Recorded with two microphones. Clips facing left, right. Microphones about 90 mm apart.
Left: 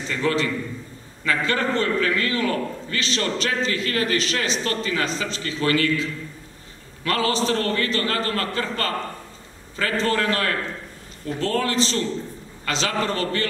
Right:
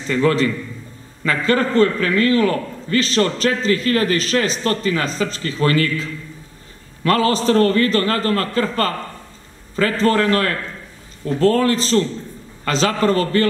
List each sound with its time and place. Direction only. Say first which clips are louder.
0.1 s a man's voice: right 6 dB; 40° right (ahead or behind)
7.1 s a man's voice: right 6 dB; 40° right (ahead or behind)